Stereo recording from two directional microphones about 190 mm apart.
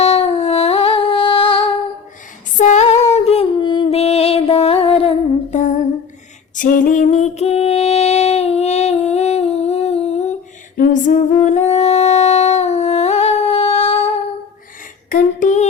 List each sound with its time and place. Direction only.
0.0 s music: 30° left (ahead or behind)
2.6 s music: 35° left (ahead or behind)
6.6 s female singing: 45° left (ahead or behind)
10.8 s a sound: 45° left (ahead or behind)
11.3 s humming: 35° left (ahead or behind)
15.1 s a sound: 40° left (ahead or behind)